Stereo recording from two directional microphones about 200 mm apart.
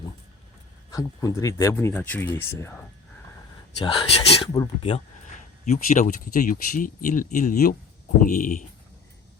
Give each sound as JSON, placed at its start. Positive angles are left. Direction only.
{"t": 0.9, "sound": "speech", "side_deg": 15}
{"t": 3.8, "sound": "speech", "side_deg": 30}